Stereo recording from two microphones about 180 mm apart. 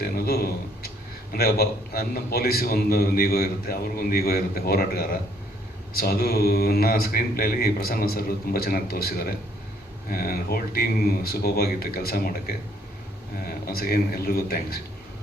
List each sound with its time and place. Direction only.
0.0 s a sound: 60° left (ahead or behind)
1.3 s a man's voice: 60° left (ahead or behind)
13.5 s a man's voice: 60° left (ahead or behind)